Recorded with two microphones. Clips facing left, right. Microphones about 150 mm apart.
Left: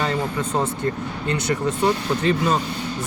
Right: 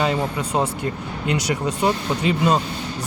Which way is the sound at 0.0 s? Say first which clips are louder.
Right 2 dB; 15° right (ahead or behind).